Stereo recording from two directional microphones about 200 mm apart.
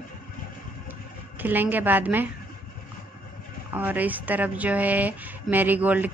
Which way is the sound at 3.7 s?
10° right (ahead or behind).